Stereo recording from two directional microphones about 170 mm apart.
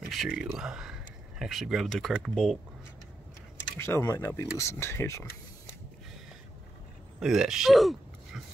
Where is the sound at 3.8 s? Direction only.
15° left (ahead or behind).